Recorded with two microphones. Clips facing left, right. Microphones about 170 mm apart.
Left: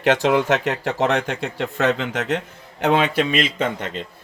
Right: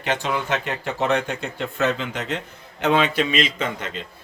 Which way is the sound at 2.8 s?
50° left (ahead or behind).